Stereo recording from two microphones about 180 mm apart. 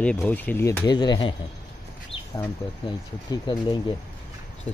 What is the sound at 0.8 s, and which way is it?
Speech, 25° left (ahead or behind).